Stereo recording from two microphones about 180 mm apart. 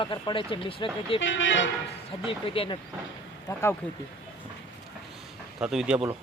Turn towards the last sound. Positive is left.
turn(degrees=-5)  # may be behind; listen again after turning